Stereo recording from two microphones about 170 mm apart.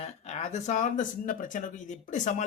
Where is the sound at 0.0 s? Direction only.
40° left (ahead or behind).